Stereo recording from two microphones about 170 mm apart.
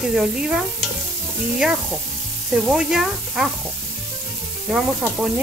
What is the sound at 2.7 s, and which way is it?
Speech, centre (ahead or behind).